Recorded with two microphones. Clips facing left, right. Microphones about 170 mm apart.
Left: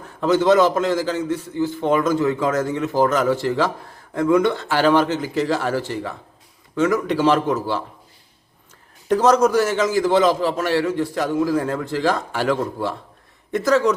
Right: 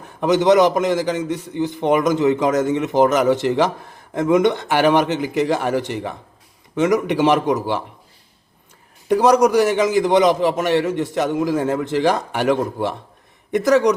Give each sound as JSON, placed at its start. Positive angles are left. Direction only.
{"t": 0.0, "sound": "a man's voice", "side_deg": -20}
{"t": 9.0, "sound": "a man's voice", "side_deg": -10}